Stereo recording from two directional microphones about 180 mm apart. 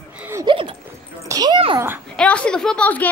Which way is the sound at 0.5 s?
30° right (ahead or behind).